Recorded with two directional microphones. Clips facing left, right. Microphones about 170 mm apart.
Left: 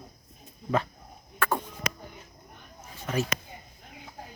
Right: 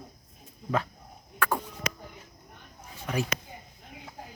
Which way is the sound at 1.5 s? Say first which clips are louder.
Left 1 dB; centre (ahead or behind).